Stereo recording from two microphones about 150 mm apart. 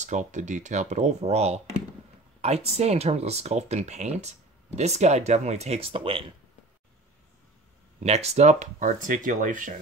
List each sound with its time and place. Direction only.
0.0 s speech: 55° right (ahead or behind); by 6.2 s 35° right (ahead or behind)
8.0 s speech: 45° right (ahead or behind)